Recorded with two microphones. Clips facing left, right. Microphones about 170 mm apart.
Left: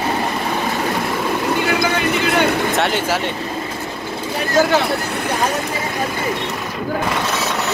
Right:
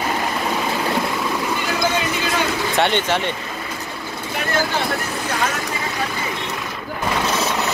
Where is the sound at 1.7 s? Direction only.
65° left (ahead or behind).